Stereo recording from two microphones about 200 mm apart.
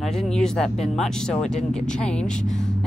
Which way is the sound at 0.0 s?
Centre (ahead or behind).